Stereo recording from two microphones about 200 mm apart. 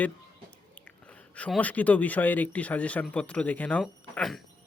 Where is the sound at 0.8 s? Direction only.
5° left (ahead or behind).